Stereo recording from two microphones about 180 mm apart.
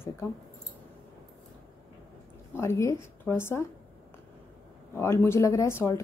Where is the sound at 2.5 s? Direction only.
15° left (ahead or behind).